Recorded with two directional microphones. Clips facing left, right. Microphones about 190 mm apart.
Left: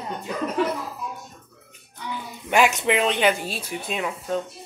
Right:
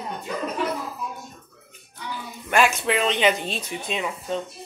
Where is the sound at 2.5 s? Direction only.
15° left (ahead or behind).